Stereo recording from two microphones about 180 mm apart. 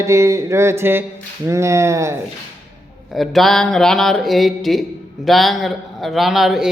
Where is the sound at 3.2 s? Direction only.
Centre (ahead or behind).